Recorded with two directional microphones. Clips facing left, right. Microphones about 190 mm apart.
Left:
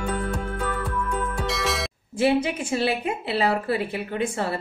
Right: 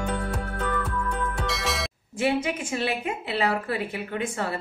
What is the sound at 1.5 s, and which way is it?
Music, centre (ahead or behind).